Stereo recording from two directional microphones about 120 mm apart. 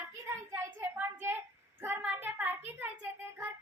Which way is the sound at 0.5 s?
20° right (ahead or behind).